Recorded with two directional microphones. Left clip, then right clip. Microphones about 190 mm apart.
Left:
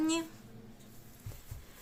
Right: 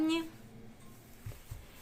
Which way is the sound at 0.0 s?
Centre (ahead or behind).